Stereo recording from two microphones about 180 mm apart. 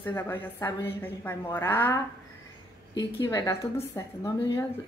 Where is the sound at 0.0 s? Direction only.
10° left (ahead or behind).